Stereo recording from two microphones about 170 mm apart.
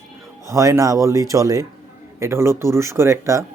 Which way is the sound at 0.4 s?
15° right (ahead or behind).